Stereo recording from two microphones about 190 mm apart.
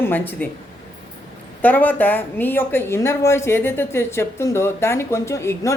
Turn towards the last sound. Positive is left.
turn(degrees=15)  # may be behind; listen again after turning